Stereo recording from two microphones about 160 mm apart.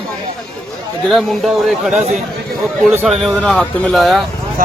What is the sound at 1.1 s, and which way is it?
Speech, centre (ahead or behind).